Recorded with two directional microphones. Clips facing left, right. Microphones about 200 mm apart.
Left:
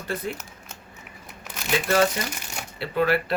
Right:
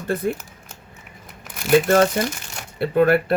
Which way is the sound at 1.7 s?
50° right (ahead or behind).